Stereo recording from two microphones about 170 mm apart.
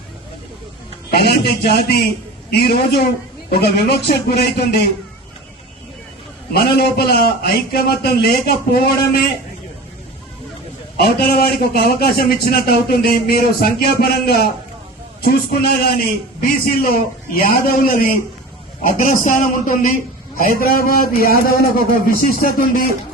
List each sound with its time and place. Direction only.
1.1 s a man's voice: 70° left (ahead or behind)
6.5 s a man's voice: 70° left (ahead or behind)
11.0 s a man's voice: 70° left (ahead or behind)
22.0 s speech: 55° right (ahead or behind)
22.4 s a man's voice: 55° left (ahead or behind)